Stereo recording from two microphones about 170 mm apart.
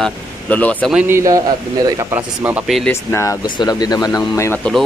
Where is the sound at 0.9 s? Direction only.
15° right (ahead or behind).